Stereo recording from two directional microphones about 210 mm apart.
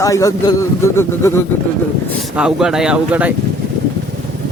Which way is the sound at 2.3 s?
5° right (ahead or behind).